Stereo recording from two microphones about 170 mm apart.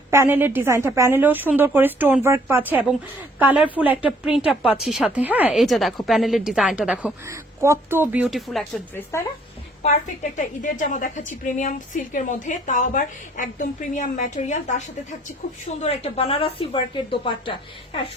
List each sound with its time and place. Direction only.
0.1 s speech: 15° right (ahead or behind)
7.3 s speech: 15° right (ahead or behind)
8.2 s speech: centre (ahead or behind)
9.1 s speech: 15° left (ahead or behind)
9.8 s a woman's voice: 45° left (ahead or behind); by 17.5 s 30° left (ahead or behind)